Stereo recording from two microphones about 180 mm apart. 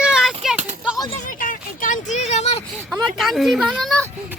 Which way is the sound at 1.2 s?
50° left (ahead or behind).